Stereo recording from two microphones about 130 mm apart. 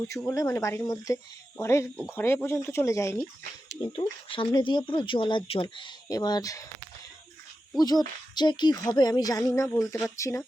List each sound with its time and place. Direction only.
0.3 s speech: 20° left (ahead or behind)
3.9 s speech: 45° left (ahead or behind); by 6.7 s 25° left (ahead or behind)
7.8 s speech: 30° left (ahead or behind)